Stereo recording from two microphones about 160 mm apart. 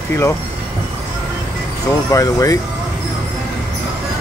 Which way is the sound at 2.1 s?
20° left (ahead or behind).